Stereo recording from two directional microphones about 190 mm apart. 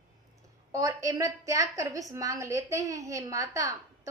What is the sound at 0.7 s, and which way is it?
Female singing, 15° right (ahead or behind).